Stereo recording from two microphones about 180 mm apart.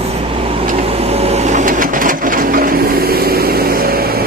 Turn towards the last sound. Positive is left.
turn(degrees=-55)  # may be behind; listen again after turning